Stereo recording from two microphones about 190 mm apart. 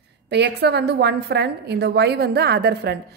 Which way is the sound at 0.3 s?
65° right (ahead or behind).